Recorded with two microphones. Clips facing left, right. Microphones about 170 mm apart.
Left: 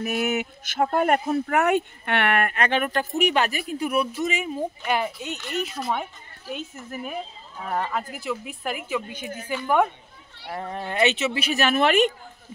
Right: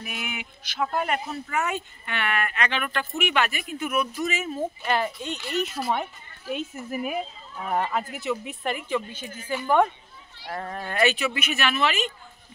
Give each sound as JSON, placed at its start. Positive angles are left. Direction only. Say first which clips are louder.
{"t": 0.0, "sound": "speech", "louder": "left 11 dB", "side_deg": 45}
{"t": 4.2, "sound": "a woman's voice", "louder": "left 1 dB", "side_deg": 15}
{"t": 10.5, "sound": "speech", "louder": "left 2 dB", "side_deg": 20}